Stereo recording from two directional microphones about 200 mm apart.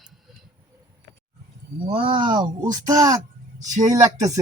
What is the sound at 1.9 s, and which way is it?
Speech, 25° right (ahead or behind).